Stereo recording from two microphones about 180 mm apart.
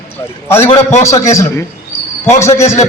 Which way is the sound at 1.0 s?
15° left (ahead or behind).